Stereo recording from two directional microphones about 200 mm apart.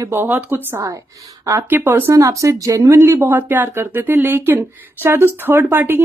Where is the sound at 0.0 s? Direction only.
10° right (ahead or behind).